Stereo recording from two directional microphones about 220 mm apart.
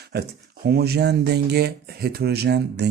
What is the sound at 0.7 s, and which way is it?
Speech, 45° right (ahead or behind).